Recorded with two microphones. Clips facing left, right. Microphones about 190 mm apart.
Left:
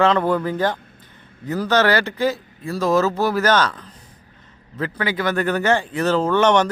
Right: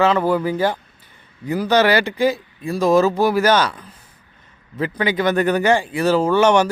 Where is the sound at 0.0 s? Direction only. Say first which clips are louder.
Right 1 dB; 5° right (ahead or behind).